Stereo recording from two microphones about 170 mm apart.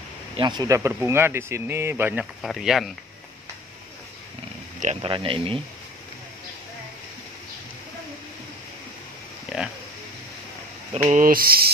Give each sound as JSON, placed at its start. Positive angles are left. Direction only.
{"t": 0.4, "sound": "speech", "side_deg": -25}
{"t": 2.4, "sound": "speech", "side_deg": 0}
{"t": 5.0, "sound": "speech", "side_deg": -30}
{"t": 9.5, "sound": "oink", "side_deg": -5}
{"t": 11.0, "sound": "a sound", "side_deg": -50}